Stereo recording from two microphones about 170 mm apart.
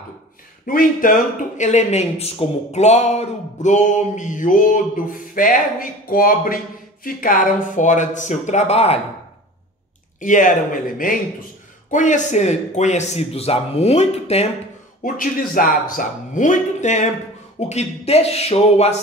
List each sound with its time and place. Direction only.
0.7 s speech: 55° left (ahead or behind)
10.2 s speech: 50° left (ahead or behind)
11.9 s a man's voice: 50° left (ahead or behind)
15.0 s a man's voice: 55° left (ahead or behind); by 18.9 s 40° left (ahead or behind)